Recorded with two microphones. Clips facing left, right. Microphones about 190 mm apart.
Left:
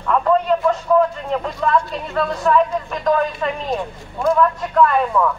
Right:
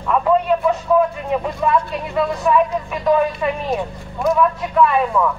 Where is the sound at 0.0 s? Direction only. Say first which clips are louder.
Even; 5° right (ahead or behind).